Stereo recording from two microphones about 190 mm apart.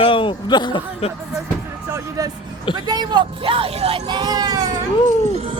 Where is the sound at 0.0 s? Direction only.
25° left (ahead or behind).